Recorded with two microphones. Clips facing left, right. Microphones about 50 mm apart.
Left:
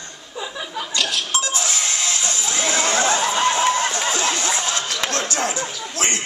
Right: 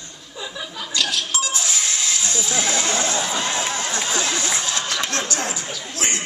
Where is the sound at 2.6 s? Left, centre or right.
Left.